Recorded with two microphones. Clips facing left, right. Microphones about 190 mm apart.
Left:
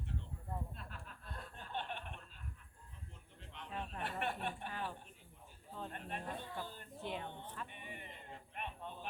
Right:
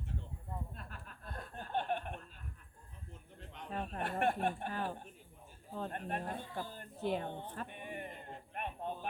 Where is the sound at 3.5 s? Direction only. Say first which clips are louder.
Right 4 dB; 45° right (ahead or behind).